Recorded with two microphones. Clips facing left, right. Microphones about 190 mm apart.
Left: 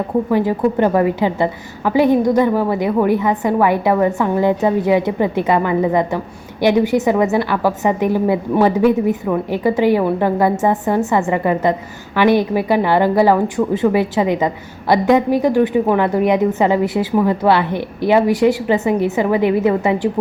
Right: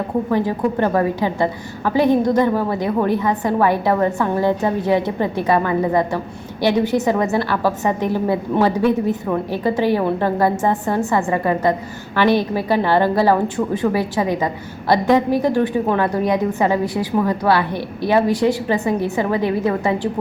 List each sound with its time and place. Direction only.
0.3 s a woman's voice: 15° left (ahead or behind)